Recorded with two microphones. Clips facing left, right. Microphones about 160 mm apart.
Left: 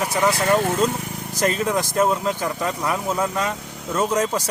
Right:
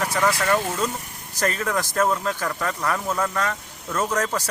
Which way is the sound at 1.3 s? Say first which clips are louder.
Left 3 dB; 15° left (ahead or behind).